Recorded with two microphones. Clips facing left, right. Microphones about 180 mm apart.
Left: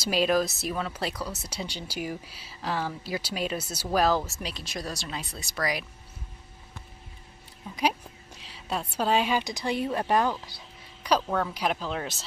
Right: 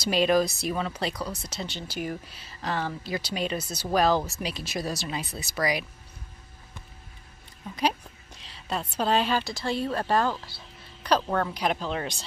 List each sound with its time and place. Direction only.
0.0 s speech: 5° left (ahead or behind)
8.4 s a woman's voice: 10° left (ahead or behind)
10.4 s a sound: 15° left (ahead or behind)
11.2 s speech: 5° right (ahead or behind)